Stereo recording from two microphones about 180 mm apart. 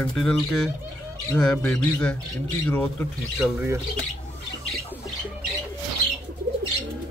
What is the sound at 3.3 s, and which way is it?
Speech, 10° right (ahead or behind).